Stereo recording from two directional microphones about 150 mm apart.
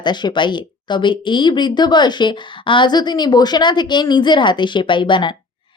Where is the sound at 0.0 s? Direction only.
30° left (ahead or behind).